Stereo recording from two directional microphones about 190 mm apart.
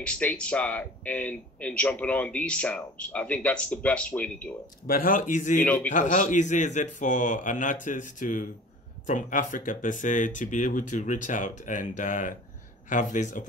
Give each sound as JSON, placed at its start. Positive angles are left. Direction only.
{"t": 0.0, "sound": "speech", "side_deg": 5}
{"t": 4.8, "sound": "speech", "side_deg": 50}